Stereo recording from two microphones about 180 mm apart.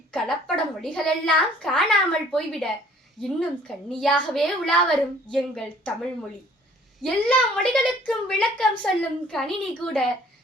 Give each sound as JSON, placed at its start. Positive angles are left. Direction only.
{"t": 0.1, "sound": "a child's voice", "side_deg": 5}
{"t": 7.0, "sound": "a child's voice", "side_deg": 5}